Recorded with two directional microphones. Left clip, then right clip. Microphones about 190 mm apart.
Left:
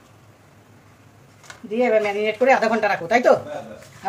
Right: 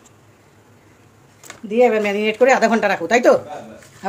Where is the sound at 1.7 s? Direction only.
60° right (ahead or behind).